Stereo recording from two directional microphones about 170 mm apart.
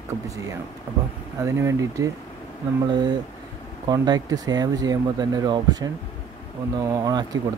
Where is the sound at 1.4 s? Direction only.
15° right (ahead or behind).